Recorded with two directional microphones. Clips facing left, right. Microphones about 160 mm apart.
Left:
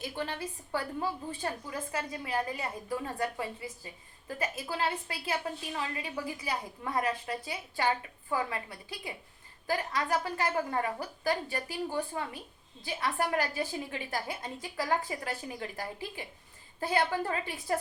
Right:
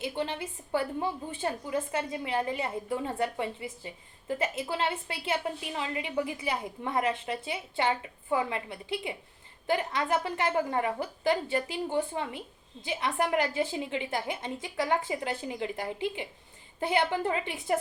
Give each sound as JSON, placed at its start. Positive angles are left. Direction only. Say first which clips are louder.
{"t": 0.0, "sound": "a woman's voice", "louder": "right 3 dB", "side_deg": -20}